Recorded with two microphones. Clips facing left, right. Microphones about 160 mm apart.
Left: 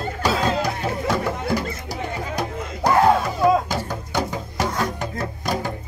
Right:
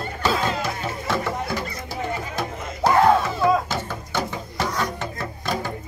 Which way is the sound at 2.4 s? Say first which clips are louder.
Even; 15° left (ahead or behind).